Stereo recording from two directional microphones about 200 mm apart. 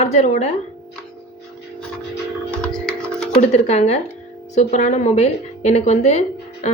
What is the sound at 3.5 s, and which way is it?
A woman's voice, 35° left (ahead or behind).